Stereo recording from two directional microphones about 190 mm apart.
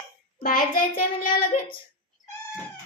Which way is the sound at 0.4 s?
50° left (ahead or behind).